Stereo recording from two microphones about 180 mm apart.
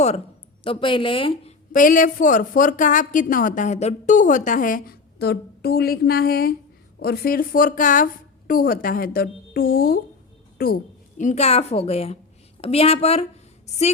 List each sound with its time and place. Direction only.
0.6 s a woman's voice: 30° left (ahead or behind)
1.7 s a woman's voice: 45° left (ahead or behind)
11.2 s a woman's voice: 40° left (ahead or behind)